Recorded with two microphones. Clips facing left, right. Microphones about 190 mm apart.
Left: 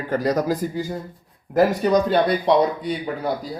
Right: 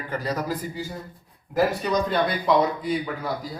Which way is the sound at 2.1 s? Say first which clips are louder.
Left 4 dB; 35° left (ahead or behind).